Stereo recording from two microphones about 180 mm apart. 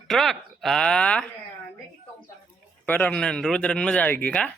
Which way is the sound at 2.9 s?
10° left (ahead or behind).